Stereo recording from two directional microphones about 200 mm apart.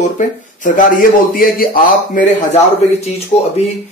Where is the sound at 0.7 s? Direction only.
45° left (ahead or behind).